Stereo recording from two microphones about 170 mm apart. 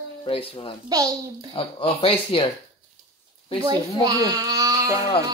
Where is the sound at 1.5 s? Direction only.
30° left (ahead or behind).